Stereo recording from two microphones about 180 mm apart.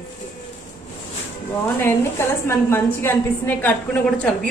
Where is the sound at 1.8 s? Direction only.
15° left (ahead or behind).